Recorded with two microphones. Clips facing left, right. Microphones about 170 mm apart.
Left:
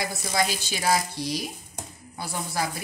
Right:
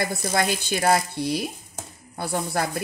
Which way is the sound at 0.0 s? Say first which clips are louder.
Right 3 dB; 55° right (ahead or behind).